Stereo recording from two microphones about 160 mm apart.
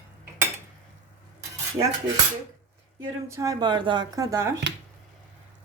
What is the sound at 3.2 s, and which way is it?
Speech, 20° right (ahead or behind).